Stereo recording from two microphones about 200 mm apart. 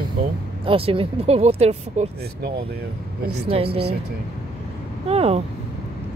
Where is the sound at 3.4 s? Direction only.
30° right (ahead or behind).